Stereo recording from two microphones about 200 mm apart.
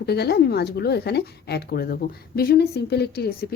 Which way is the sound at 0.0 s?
55° left (ahead or behind).